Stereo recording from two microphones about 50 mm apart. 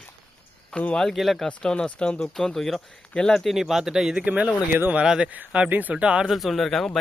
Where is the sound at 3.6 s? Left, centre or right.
Centre.